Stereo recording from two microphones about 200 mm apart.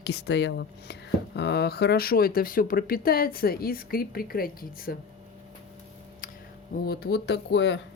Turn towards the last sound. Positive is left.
turn(degrees=60)  # may be behind; listen again after turning